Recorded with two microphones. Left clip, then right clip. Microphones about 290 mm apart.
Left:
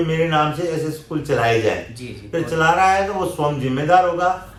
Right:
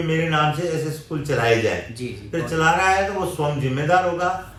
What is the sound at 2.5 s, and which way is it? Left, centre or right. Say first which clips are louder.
A man's voice: left 3 dB; centre.